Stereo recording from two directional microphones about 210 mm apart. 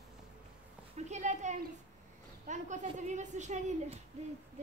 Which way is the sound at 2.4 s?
35° right (ahead or behind).